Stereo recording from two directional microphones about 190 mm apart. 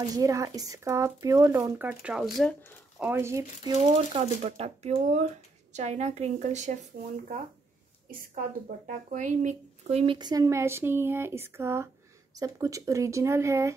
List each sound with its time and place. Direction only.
0.1 s speech: 15° right (ahead or behind); by 2.5 s centre (ahead or behind)
3.0 s speech: 10° right (ahead or behind)
3.7 s speech: 35° right (ahead or behind)
8.6 s speech: 45° right (ahead or behind); by 13.7 s 15° right (ahead or behind)